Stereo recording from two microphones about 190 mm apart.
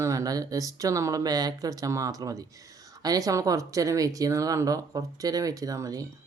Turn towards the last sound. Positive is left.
turn(degrees=-15)  # may be behind; listen again after turning